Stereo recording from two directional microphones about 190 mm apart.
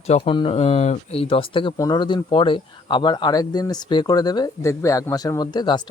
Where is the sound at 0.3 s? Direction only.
30° left (ahead or behind).